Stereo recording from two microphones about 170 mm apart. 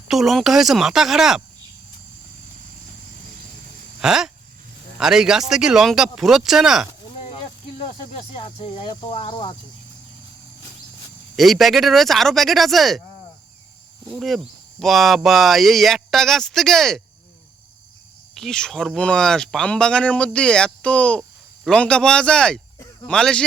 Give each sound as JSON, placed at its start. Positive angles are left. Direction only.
{"t": 0.1, "sound": "speech", "side_deg": 0}
{"t": 4.0, "sound": "speech", "side_deg": -5}
{"t": 7.2, "sound": "snake", "side_deg": 40}
{"t": 8.9, "sound": "speech", "side_deg": 30}
{"t": 11.3, "sound": "speech", "side_deg": 0}
{"t": 14.1, "sound": "speech", "side_deg": 0}
{"t": 18.3, "sound": "speech", "side_deg": 5}